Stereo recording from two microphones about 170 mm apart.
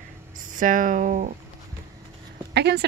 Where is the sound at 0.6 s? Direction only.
50° right (ahead or behind).